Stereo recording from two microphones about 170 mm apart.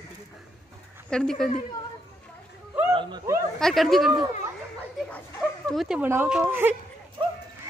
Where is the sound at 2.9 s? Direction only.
30° right (ahead or behind).